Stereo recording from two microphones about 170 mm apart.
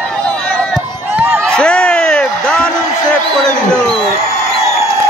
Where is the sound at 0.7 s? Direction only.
10° right (ahead or behind).